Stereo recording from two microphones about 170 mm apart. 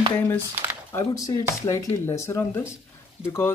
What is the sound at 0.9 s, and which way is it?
Speech, 20° left (ahead or behind).